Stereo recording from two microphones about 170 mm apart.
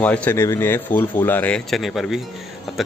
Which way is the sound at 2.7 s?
Centre (ahead or behind).